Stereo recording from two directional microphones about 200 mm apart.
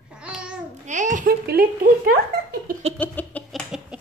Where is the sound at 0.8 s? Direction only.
35° right (ahead or behind).